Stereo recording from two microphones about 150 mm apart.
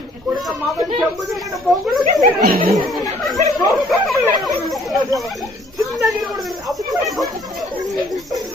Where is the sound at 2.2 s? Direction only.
75° right (ahead or behind).